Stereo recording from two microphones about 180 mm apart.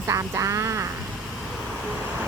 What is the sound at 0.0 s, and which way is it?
Speech, 15° right (ahead or behind).